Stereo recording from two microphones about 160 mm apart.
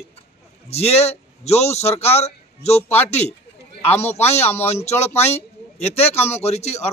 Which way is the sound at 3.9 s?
40° left (ahead or behind).